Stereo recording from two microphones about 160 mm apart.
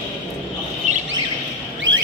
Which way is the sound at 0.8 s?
45° right (ahead or behind).